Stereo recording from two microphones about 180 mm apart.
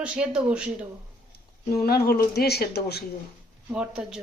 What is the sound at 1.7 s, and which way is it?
Speech, 60° left (ahead or behind).